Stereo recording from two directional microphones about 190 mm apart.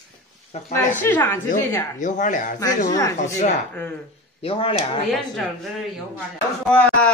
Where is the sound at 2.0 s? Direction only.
40° left (ahead or behind).